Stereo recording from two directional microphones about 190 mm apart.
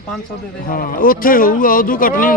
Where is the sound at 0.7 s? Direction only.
50° left (ahead or behind).